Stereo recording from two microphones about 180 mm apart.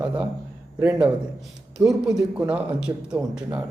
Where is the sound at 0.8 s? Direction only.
10° right (ahead or behind).